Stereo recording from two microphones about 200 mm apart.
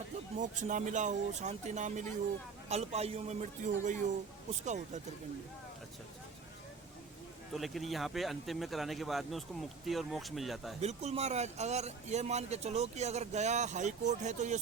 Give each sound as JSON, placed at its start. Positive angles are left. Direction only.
{"t": 0.3, "sound": "speech", "side_deg": -40}
{"t": 7.5, "sound": "speech", "side_deg": 0}
{"t": 10.8, "sound": "speech", "side_deg": -35}